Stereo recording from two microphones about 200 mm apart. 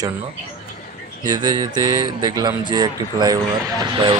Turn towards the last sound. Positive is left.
turn(degrees=-20)  # may be behind; listen again after turning